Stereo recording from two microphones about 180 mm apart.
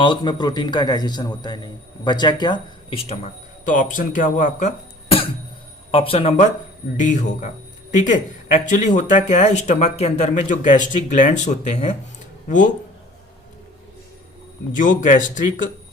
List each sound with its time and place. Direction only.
0.0 s a man's voice: 25° left (ahead or behind); by 4.7 s 45° left (ahead or behind)
5.0 s cough: 30° left (ahead or behind)
5.9 s speech: 30° left (ahead or behind)
14.7 s speech: 45° left (ahead or behind)